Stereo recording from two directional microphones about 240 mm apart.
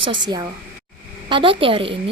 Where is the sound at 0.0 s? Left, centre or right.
Centre.